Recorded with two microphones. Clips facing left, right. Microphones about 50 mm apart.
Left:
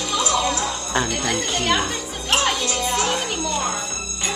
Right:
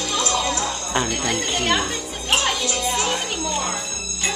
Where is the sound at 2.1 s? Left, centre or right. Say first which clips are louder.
Left 1 dB; centre.